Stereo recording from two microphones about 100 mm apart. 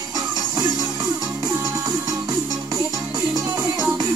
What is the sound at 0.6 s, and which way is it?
Music, 40° right (ahead or behind).